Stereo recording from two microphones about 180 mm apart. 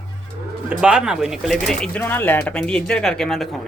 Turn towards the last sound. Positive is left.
turn(degrees=0)  # may be behind; listen again after turning